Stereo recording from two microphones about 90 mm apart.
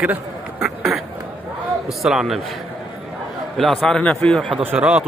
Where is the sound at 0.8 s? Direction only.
5° right (ahead or behind).